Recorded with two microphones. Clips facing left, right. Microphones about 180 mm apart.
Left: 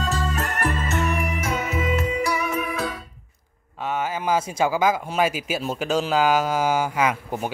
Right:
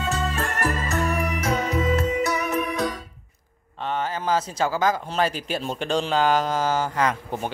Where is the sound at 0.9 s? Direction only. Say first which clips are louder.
Even; 35° right (ahead or behind).